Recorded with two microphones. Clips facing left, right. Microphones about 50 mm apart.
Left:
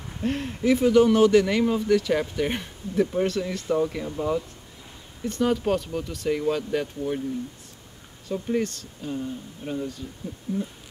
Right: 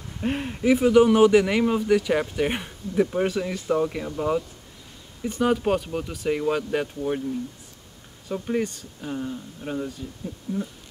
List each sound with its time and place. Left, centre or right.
0.2 s speech: centre
8.3 s speech: centre
10.5 s hoot: centre